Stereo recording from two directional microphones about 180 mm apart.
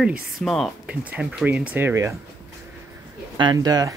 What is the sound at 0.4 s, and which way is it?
Speech, centre (ahead or behind).